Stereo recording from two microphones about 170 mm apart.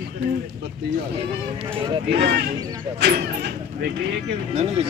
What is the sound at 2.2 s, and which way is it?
Speech, 75° right (ahead or behind).